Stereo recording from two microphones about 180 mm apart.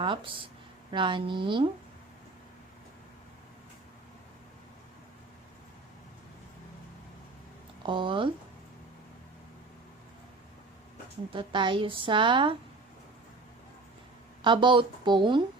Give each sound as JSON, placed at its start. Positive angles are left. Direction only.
{"t": 0.0, "sound": "speech", "side_deg": -30}
{"t": 7.9, "sound": "a woman's voice", "side_deg": -25}
{"t": 11.3, "sound": "a woman's voice", "side_deg": -25}
{"t": 14.4, "sound": "a woman's voice", "side_deg": -25}